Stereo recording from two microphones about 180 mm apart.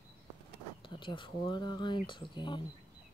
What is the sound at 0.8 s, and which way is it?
Speech, 25° left (ahead or behind).